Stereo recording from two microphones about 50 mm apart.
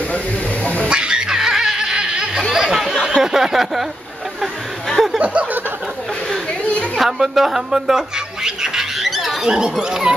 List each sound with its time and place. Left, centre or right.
0.8 s music: centre
2.5 s a sound: centre
3.2 s a woman's voice: centre
5.2 s a sound: right
7.0 s a woman's voice: centre
8.5 s pig: centre
9.4 s a woman's voice: centre